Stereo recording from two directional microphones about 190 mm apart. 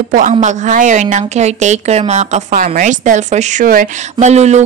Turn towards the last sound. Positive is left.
turn(degrees=-35)  # may be behind; listen again after turning